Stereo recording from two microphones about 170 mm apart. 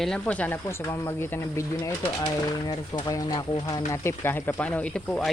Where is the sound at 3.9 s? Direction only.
15° left (ahead or behind).